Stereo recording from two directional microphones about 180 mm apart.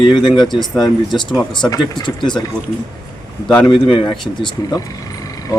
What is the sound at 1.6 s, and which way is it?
Speech, 25° left (ahead or behind).